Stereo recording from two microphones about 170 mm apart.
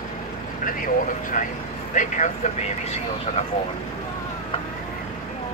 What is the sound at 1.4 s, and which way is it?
Speech, 50° left (ahead or behind).